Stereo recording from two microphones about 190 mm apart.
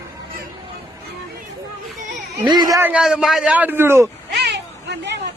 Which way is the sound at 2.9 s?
5° right (ahead or behind).